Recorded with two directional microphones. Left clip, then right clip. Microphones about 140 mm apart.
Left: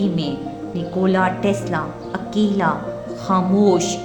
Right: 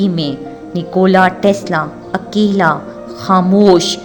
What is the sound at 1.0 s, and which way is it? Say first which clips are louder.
A woman's voice: right 8 dB; 55° right (ahead or behind).